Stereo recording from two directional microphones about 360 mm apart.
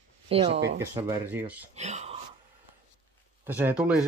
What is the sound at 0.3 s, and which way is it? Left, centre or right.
Speech, centre.